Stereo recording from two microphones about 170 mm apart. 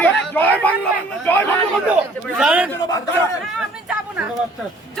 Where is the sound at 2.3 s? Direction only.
10° right (ahead or behind).